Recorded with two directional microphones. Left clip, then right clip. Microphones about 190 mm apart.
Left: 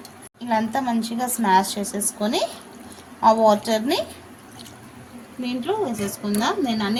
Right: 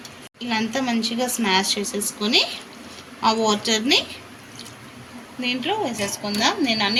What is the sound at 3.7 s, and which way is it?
Speech, 45° left (ahead or behind).